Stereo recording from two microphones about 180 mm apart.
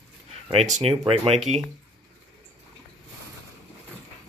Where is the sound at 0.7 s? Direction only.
35° right (ahead or behind).